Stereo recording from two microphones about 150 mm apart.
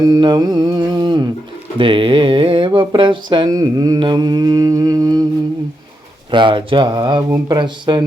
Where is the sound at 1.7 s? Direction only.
35° right (ahead or behind).